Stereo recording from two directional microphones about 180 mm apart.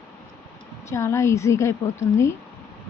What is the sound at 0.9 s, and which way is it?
A woman's voice, 15° left (ahead or behind).